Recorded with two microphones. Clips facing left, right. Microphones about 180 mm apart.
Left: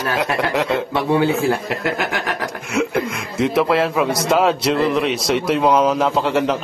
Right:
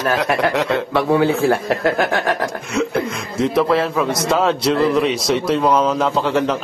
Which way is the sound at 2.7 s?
5° left (ahead or behind).